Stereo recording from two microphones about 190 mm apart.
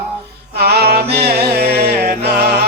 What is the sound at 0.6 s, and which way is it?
Music, 55° right (ahead or behind).